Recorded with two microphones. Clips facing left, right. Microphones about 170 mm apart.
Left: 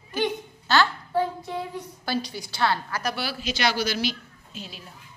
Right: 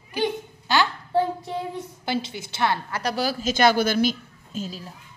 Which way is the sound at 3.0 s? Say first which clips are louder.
Right 5 dB; 40° right (ahead or behind).